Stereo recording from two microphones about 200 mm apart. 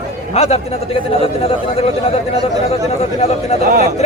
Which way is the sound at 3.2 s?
30° left (ahead or behind).